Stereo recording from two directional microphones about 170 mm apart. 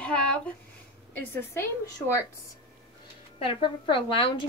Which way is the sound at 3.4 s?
30° left (ahead or behind).